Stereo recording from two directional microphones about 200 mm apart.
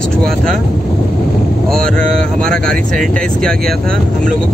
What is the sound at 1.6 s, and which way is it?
Speech, 5° left (ahead or behind).